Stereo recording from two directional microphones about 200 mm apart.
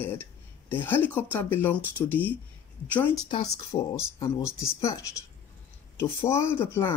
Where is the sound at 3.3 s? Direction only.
25° left (ahead or behind).